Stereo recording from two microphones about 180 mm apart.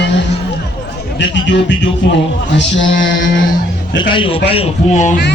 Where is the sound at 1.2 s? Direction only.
90° left.